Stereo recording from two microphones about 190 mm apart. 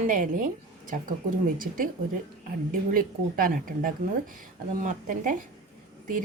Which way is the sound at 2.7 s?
45° right (ahead or behind).